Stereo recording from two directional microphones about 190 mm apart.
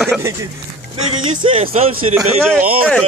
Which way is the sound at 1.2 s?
25° right (ahead or behind).